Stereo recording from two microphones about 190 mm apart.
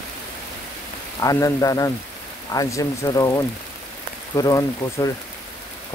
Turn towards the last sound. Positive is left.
turn(degrees=20)  # may be behind; listen again after turning